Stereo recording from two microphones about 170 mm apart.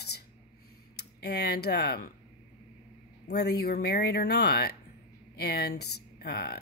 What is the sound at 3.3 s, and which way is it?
A woman's voice, 75° left (ahead or behind).